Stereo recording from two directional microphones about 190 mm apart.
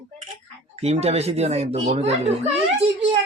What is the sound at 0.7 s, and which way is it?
Speech, 35° right (ahead or behind).